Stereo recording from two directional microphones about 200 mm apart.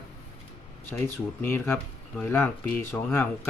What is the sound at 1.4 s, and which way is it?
Speech, 10° left (ahead or behind).